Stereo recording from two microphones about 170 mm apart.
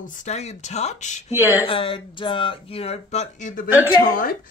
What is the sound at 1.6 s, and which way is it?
Speech, 30° left (ahead or behind).